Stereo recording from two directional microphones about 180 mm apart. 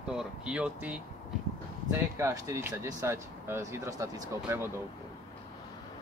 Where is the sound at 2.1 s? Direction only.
15° right (ahead or behind).